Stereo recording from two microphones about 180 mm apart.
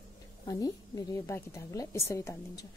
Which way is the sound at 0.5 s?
20° left (ahead or behind).